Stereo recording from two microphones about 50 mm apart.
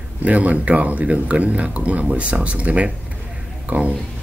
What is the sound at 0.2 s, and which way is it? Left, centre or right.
Speech, right.